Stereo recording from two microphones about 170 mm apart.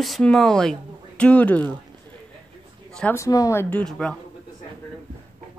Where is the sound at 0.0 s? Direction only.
Centre (ahead or behind).